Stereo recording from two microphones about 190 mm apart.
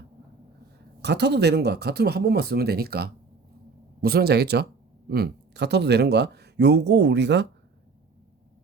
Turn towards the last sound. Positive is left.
turn(degrees=-65)  # may be behind; listen again after turning